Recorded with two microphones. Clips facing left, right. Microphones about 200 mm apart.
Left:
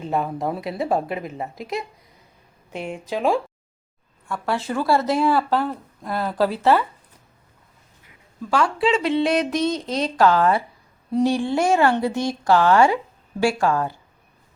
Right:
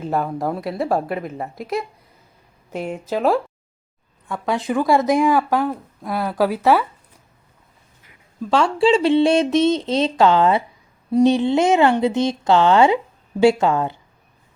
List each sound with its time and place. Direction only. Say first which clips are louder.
0.0 s speech: right 2 dB; centre (ahead or behind)
2.9 s speech: right 2 dB; centre (ahead or behind)
4.3 s a woman's voice: right 3 dB; 15° right (ahead or behind)
8.4 s speech: right 4 dB; 25° right (ahead or behind)